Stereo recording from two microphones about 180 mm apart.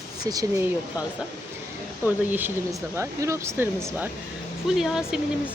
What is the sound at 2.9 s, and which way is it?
Speech, 15° right (ahead or behind).